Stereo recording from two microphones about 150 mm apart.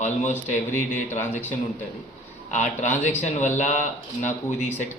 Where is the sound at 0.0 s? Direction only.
55° left (ahead or behind).